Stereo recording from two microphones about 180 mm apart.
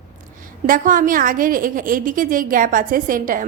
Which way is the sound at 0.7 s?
50° right (ahead or behind).